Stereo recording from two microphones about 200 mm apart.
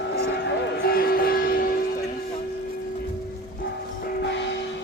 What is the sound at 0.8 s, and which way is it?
Music, 50° left (ahead or behind).